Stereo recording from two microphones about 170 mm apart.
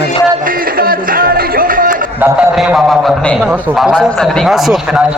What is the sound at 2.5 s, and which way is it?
A man's voice, centre (ahead or behind).